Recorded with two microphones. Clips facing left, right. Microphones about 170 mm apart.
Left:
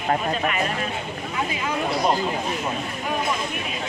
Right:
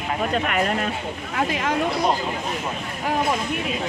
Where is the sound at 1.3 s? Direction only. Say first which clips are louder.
Right 4 dB; 80° right.